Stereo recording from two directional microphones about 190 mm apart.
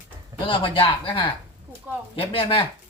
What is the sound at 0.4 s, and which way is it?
Speech, 25° left (ahead or behind).